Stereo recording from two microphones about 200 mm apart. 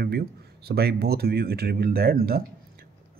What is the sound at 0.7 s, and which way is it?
Speech, 50° right (ahead or behind).